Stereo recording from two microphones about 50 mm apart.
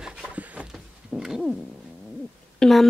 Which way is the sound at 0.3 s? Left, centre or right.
Right.